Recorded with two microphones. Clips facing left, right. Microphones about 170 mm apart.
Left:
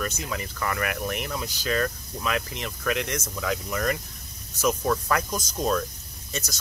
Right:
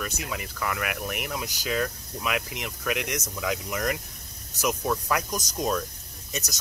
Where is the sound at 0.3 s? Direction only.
5° right (ahead or behind).